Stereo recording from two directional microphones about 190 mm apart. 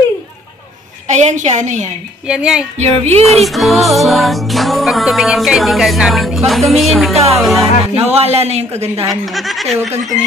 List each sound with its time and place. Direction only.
1.0 s speech: 40° right (ahead or behind)
2.2 s music: 5° right (ahead or behind)
2.8 s speech: 35° right (ahead or behind)
3.3 s music: centre (ahead or behind)
7.6 s speech: 30° right (ahead or behind)
9.1 s music: centre (ahead or behind)